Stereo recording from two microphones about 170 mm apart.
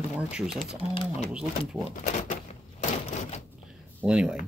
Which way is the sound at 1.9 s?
45° left (ahead or behind).